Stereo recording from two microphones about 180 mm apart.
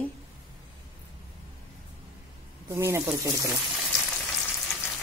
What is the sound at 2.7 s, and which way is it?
Speech, 15° right (ahead or behind).